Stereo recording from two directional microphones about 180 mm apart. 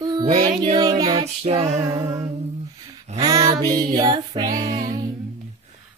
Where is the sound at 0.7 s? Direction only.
20° right (ahead or behind).